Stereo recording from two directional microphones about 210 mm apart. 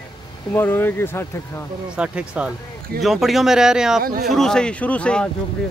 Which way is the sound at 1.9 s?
5° right (ahead or behind).